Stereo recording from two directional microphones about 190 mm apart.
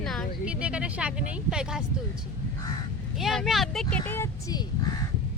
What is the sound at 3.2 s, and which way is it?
Speech, centre (ahead or behind).